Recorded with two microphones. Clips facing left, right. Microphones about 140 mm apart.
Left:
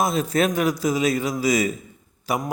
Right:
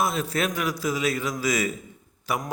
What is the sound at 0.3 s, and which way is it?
Speech, 40° left (ahead or behind).